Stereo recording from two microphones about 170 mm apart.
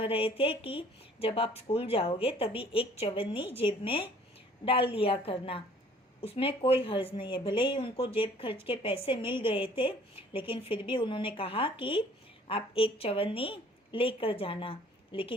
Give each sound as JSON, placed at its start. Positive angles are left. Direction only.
{"t": 0.0, "sound": "speech", "side_deg": 30}